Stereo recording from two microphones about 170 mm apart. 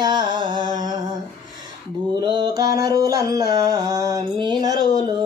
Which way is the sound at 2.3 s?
25° right (ahead or behind).